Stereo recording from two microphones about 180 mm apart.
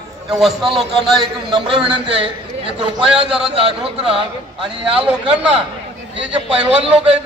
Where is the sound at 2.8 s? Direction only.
5° right (ahead or behind).